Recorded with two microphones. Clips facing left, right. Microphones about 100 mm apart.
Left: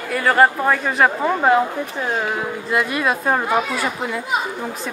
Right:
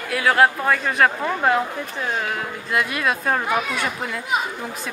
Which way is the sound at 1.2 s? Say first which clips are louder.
Left 4 dB; 15° left (ahead or behind).